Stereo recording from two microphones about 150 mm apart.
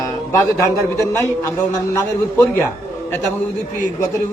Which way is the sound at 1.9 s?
15° left (ahead or behind).